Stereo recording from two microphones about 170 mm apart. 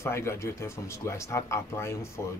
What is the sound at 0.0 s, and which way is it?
Speech, 15° left (ahead or behind).